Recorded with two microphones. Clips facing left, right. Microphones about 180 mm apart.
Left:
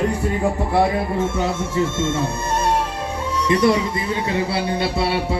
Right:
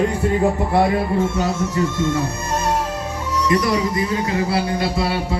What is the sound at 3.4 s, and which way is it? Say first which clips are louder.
A man's voice: left 1 dB; 30° left (ahead or behind).